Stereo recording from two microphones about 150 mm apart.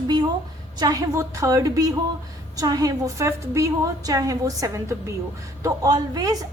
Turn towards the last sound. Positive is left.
turn(degrees=-25)  # may be behind; listen again after turning